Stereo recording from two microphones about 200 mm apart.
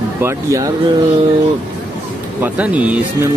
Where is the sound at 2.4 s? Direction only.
5° right (ahead or behind).